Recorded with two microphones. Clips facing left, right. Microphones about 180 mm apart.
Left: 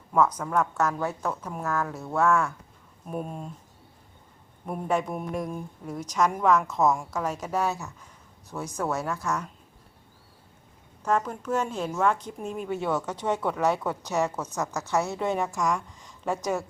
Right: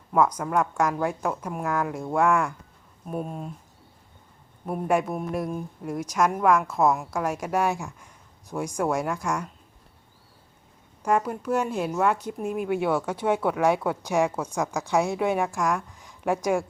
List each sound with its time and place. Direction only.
0.1 s speech: 10° right (ahead or behind)
3.1 s speech: centre (ahead or behind)
4.6 s speech: 5° right (ahead or behind)
11.0 s speech: 10° right (ahead or behind)